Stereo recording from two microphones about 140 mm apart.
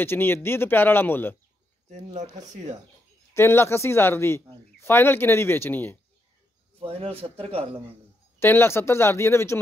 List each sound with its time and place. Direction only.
0.0 s speech: 15° left (ahead or behind)
2.3 s speech: 60° right (ahead or behind)
3.3 s speech: 20° left (ahead or behind)
6.8 s a man's voice: 45° right (ahead or behind)
8.4 s speech: 15° left (ahead or behind)